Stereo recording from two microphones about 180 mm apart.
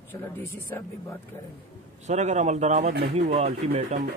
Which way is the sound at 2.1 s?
40° right (ahead or behind).